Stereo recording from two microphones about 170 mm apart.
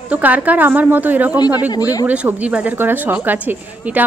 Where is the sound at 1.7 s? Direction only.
20° left (ahead or behind).